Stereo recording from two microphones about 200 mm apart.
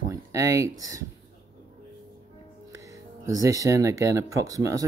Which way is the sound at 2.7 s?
15° right (ahead or behind).